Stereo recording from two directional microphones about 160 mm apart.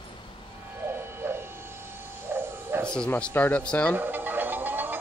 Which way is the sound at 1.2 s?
15° right (ahead or behind).